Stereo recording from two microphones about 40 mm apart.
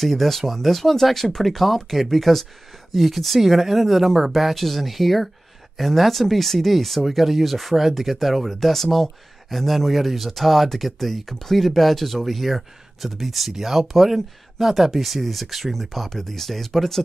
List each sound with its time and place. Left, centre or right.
0.0 s speech: centre